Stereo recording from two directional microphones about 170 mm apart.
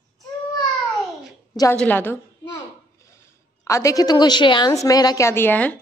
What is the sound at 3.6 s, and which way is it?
A woman's voice, 20° left (ahead or behind).